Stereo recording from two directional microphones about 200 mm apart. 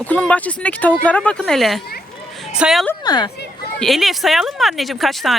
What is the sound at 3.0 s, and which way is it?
Speech, 20° left (ahead or behind).